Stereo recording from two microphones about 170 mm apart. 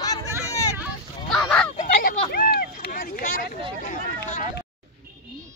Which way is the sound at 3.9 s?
50° left (ahead or behind).